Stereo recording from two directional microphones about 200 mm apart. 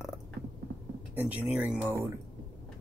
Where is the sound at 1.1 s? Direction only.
5° right (ahead or behind).